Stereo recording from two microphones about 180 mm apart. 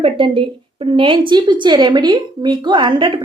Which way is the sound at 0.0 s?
30° right (ahead or behind).